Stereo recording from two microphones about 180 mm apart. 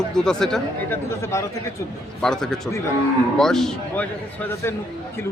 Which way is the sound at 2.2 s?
5° left (ahead or behind).